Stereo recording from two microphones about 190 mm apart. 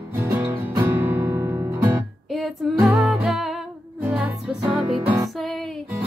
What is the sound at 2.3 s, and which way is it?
Music, centre (ahead or behind).